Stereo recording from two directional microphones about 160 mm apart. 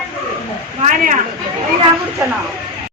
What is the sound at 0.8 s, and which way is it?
Speech, 50° right (ahead or behind).